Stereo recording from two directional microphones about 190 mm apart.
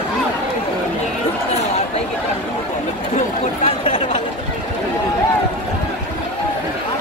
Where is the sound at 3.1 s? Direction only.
40° left (ahead or behind).